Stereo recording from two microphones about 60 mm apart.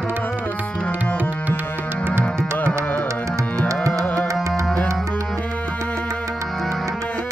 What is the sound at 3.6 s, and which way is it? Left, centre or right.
Music, right.